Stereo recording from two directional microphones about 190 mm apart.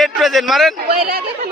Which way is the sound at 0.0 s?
Centre (ahead or behind).